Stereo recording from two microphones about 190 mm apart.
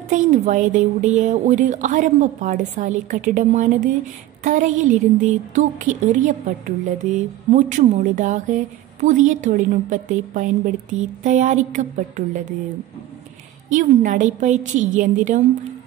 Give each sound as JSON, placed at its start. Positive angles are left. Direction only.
{"t": 0.1, "sound": "a woman's voice", "side_deg": -40}
{"t": 13.7, "sound": "a woman's voice", "side_deg": -40}